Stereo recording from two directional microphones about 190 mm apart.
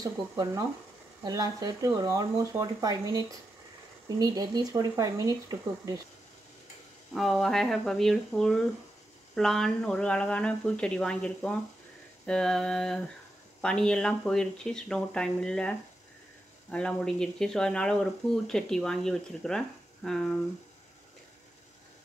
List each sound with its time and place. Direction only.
1.2 s speech: 20° right (ahead or behind)
7.2 s speech: centre (ahead or behind)
16.7 s speech: 5° left (ahead or behind)